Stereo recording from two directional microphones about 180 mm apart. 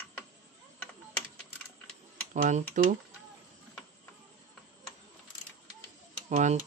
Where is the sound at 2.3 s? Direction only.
45° right (ahead or behind).